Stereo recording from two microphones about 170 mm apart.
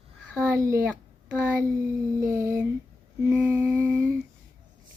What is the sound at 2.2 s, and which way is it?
Humming, 15° right (ahead or behind).